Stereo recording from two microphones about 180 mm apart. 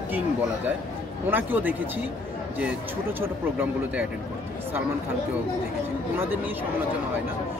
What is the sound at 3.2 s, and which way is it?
Speech, 10° right (ahead or behind).